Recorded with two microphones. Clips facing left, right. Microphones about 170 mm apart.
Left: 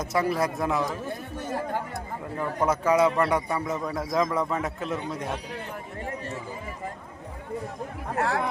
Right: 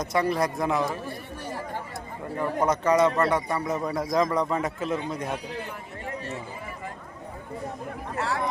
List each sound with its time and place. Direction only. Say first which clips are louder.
0.0 s a man's voice: right 1 dB; 5° left (ahead or behind)
2.4 s a man's voice: right 1 dB; 5° left (ahead or behind)
8.1 s speech: left 3 dB; 60° left (ahead or behind)